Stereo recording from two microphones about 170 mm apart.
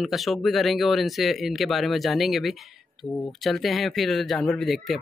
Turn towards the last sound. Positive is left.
turn(degrees=0)  # may be behind; listen again after turning